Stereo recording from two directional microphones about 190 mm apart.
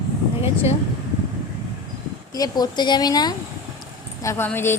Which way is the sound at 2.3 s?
20° left (ahead or behind).